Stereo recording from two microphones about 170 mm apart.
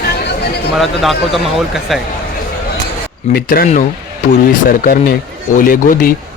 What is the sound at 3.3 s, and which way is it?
Speech, 65° left (ahead or behind).